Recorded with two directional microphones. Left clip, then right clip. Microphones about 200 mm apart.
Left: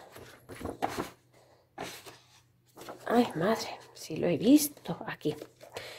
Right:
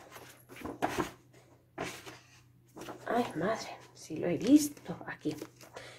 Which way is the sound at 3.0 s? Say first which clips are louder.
Left 5 dB; 55° left (ahead or behind).